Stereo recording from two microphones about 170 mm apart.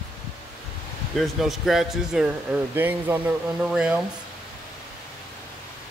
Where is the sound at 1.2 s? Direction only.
Centre (ahead or behind).